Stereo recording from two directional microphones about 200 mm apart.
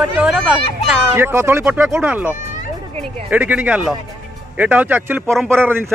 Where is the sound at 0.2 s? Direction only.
5° right (ahead or behind).